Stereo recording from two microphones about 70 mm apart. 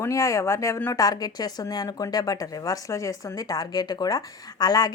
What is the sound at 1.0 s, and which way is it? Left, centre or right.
Speech, left.